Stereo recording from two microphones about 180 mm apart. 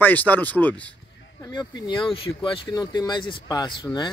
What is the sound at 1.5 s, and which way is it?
Speech, 25° left (ahead or behind).